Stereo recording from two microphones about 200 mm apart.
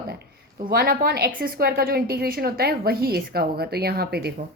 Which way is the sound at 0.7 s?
50° right (ahead or behind).